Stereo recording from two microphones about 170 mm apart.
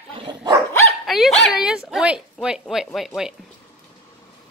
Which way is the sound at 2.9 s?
Centre (ahead or behind).